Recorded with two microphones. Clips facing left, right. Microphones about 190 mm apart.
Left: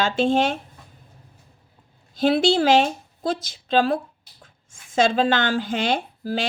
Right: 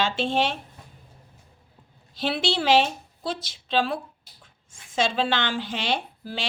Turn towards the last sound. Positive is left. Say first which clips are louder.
# left 7 dB
turn(degrees=45)  # may be behind; listen again after turning